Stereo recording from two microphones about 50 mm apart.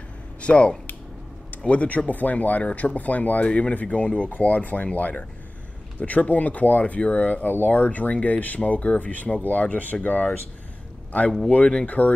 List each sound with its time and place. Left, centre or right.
0.4 s speech: left
11.5 s speech: left